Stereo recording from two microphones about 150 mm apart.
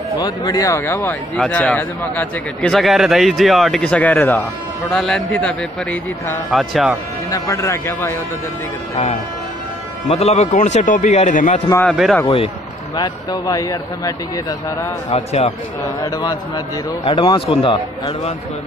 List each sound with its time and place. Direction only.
0.2 s speech: 25° left (ahead or behind)
1.4 s a man's voice: 5° left (ahead or behind)
2.7 s a man's voice: centre (ahead or behind)
4.9 s a man's voice: 5° left (ahead or behind)
7.2 s speech: 20° left (ahead or behind)
10.0 s a man's voice: 45° left (ahead or behind)
11.8 s a man's voice: 5° left (ahead or behind)
12.9 s speech: 25° left (ahead or behind)
15.0 s a man's voice: 45° left (ahead or behind)
16.0 s speech: 25° left (ahead or behind)
17.0 s speech: 40° left (ahead or behind)